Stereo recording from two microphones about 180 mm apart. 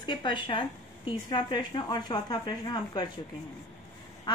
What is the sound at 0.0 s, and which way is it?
Speech, 25° left (ahead or behind).